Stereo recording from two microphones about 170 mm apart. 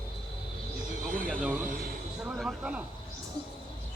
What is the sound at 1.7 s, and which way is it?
Speech, 60° right (ahead or behind).